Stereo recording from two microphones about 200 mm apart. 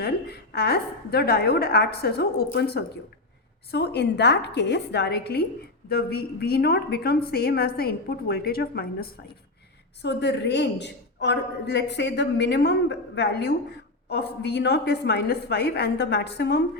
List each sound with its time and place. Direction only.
0.0 s a woman's voice: 55° left (ahead or behind)